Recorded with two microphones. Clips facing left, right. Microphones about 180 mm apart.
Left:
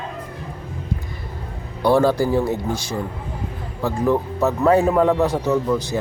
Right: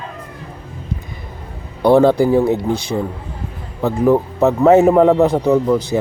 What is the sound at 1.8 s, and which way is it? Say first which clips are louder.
Speech: right 5 dB; 20° right (ahead or behind).